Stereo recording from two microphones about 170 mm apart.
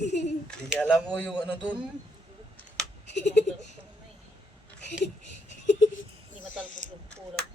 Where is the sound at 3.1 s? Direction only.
90° left.